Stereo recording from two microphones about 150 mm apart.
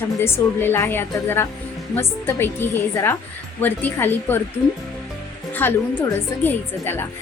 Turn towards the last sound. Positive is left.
turn(degrees=15)  # may be behind; listen again after turning